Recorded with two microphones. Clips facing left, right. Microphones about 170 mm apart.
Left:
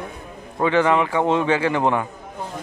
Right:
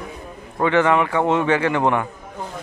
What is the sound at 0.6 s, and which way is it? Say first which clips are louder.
Speech: right 1 dB; 15° left (ahead or behind).